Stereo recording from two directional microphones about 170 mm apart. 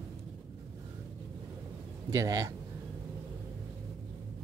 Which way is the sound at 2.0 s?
20° right (ahead or behind).